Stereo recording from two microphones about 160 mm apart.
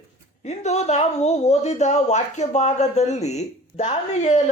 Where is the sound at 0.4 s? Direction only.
45° left (ahead or behind).